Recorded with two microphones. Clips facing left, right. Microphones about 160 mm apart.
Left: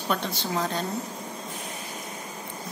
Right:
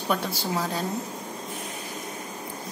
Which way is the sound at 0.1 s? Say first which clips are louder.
Right 1 dB; 5° right (ahead or behind).